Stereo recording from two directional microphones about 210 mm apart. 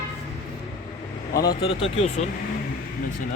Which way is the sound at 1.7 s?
30° left (ahead or behind).